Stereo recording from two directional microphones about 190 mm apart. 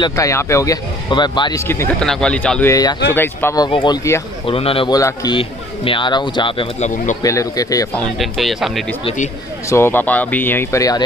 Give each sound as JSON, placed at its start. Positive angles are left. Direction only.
{"t": 0.0, "sound": "speech", "side_deg": 15}
{"t": 2.7, "sound": "a man's voice", "side_deg": 20}
{"t": 4.5, "sound": "a man's voice", "side_deg": 30}
{"t": 7.9, "sound": "speech", "side_deg": 0}
{"t": 9.0, "sound": "speech", "side_deg": 40}
{"t": 9.7, "sound": "speech", "side_deg": 15}